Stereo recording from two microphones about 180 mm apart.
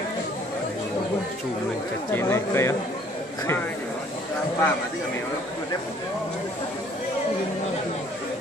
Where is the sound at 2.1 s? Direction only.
15° left (ahead or behind).